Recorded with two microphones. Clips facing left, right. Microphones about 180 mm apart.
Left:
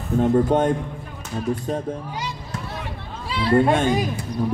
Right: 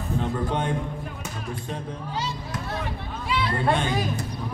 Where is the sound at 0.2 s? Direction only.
45° left (ahead or behind).